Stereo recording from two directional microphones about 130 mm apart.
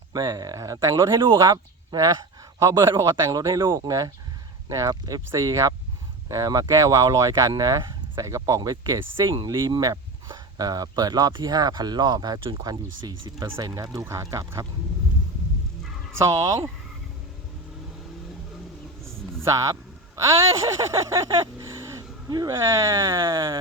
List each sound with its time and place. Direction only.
0.1 s speech: 30° right (ahead or behind)
0.9 s speech: 40° right (ahead or behind)
16.1 s speech: 25° right (ahead or behind)
19.0 s a sound: 20° right (ahead or behind)
22.5 s speech: 20° right (ahead or behind)